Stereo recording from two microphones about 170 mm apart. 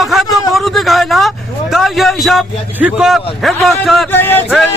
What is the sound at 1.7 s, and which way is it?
A man's voice, centre (ahead or behind).